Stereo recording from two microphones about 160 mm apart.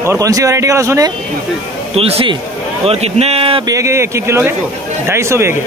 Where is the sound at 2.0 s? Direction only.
35° right (ahead or behind).